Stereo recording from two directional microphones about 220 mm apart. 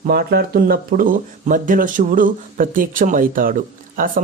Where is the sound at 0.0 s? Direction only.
45° right (ahead or behind).